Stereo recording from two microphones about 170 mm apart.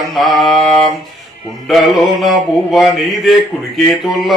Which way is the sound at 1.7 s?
Centre (ahead or behind).